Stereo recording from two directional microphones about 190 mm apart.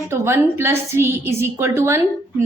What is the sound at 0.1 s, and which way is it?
A woman's voice, 15° right (ahead or behind).